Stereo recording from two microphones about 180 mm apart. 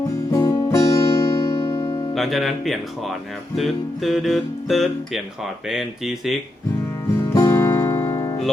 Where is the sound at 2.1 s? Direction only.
Centre (ahead or behind).